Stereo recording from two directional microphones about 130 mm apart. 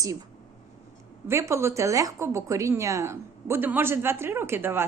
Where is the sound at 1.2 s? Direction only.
20° right (ahead or behind).